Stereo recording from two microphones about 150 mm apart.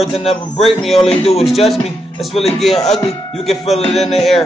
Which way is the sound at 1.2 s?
45° left (ahead or behind).